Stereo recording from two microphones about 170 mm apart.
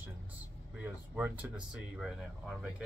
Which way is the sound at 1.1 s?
10° right (ahead or behind).